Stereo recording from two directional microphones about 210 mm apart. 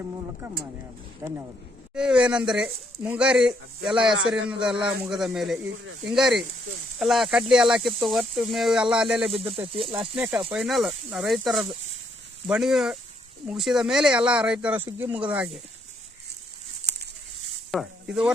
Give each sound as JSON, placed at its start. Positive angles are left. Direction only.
{"t": 1.2, "sound": "speech", "side_deg": -15}
{"t": 5.7, "sound": "speech", "side_deg": -70}
{"t": 6.1, "sound": "speech", "side_deg": 0}
{"t": 9.6, "sound": "speech", "side_deg": -25}
{"t": 10.2, "sound": "speech", "side_deg": -5}
{"t": 17.7, "sound": "speech", "side_deg": 0}